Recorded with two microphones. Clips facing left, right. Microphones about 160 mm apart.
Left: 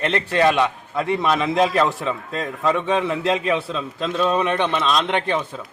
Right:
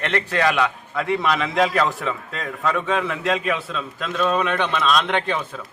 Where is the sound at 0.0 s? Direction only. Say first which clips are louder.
Left 3 dB; 20° left (ahead or behind).